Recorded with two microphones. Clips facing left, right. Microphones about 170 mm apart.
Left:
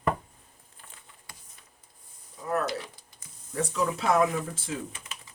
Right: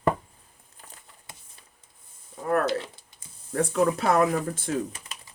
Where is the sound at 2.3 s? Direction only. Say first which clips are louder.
Right 4 dB; 55° right (ahead or behind).